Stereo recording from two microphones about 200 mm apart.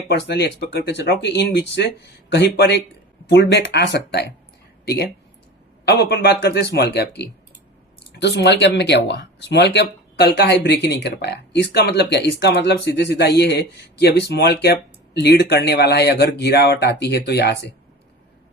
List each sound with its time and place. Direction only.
0.1 s speech: 60° left (ahead or behind)
5.8 s speech: 55° left (ahead or behind)